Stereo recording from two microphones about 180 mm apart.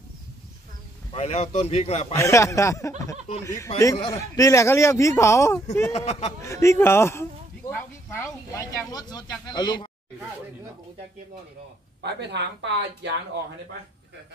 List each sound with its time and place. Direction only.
1.1 s speech: 35° left (ahead or behind)
2.1 s speech: 15° left (ahead or behind)
5.9 s speech: 35° left (ahead or behind)
6.5 s speech: 15° left (ahead or behind)
12.0 s speech: 70° right (ahead or behind)